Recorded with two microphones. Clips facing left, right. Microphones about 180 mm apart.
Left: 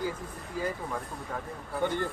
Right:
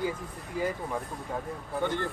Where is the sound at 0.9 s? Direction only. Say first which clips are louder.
Right 2 dB; 20° right (ahead or behind).